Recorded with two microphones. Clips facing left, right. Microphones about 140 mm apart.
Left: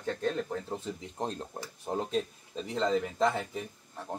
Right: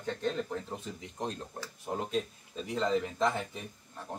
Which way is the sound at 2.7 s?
30° left (ahead or behind).